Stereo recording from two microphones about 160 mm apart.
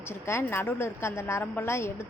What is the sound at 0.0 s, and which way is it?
A woman's voice, 15° left (ahead or behind).